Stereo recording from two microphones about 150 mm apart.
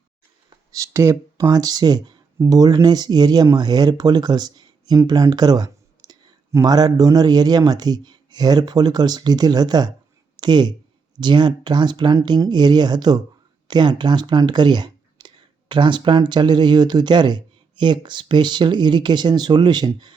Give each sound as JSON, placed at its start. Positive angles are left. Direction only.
{"t": 0.5, "sound": "speech", "side_deg": -20}
{"t": 10.3, "sound": "a sound", "side_deg": -30}
{"t": 11.2, "sound": "speech", "side_deg": -30}